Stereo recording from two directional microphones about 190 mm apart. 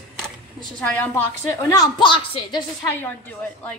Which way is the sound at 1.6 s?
20° left (ahead or behind).